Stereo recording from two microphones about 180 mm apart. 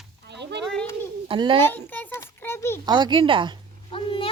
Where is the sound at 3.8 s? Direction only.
30° left (ahead or behind).